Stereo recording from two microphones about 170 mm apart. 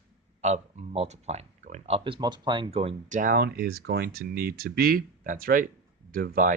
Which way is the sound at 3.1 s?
50° right (ahead or behind).